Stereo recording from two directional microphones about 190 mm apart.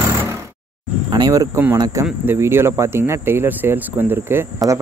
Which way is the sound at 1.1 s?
20° right (ahead or behind).